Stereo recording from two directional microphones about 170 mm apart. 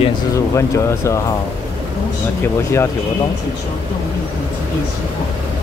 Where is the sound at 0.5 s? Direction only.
15° left (ahead or behind).